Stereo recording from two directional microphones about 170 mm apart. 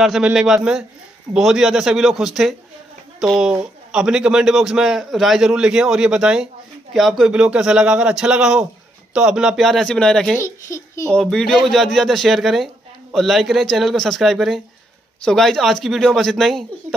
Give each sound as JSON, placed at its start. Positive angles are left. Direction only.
{"t": 0.0, "sound": "a man's voice", "side_deg": 0}
{"t": 10.4, "sound": "a child's voice", "side_deg": 15}
{"t": 11.1, "sound": "a man's voice", "side_deg": 5}